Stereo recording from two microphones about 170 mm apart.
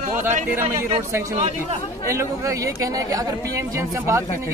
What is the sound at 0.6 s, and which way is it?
Speech, 15° right (ahead or behind).